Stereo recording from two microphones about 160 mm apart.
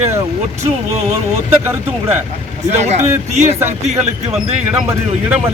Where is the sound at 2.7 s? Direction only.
45° right (ahead or behind).